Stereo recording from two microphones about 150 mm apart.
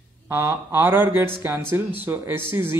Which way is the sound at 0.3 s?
15° right (ahead or behind).